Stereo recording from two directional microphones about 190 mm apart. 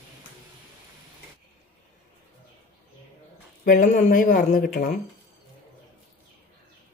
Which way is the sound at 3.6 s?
45° left (ahead or behind).